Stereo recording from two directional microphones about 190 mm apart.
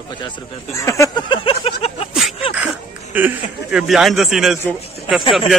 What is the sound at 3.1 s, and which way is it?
Speech, 5° right (ahead or behind).